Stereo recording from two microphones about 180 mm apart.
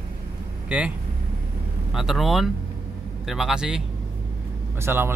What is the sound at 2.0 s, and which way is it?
Speech, centre (ahead or behind).